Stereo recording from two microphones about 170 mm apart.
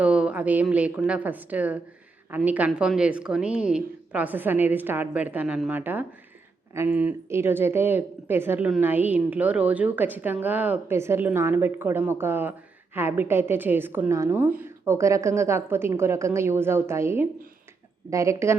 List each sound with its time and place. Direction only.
0.0 s speech: 5° right (ahead or behind)